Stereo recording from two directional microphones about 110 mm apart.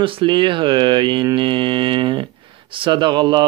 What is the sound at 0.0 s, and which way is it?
A man's voice, 50° right (ahead or behind).